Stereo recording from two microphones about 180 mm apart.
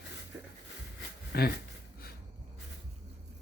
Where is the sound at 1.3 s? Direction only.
60° left (ahead or behind).